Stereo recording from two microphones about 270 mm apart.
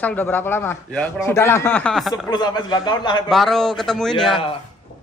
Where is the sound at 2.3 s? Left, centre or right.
Centre.